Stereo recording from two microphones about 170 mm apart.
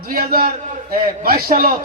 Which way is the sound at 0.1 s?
60° right (ahead or behind).